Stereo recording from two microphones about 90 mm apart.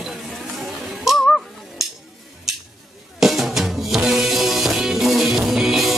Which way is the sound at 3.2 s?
5° right (ahead or behind).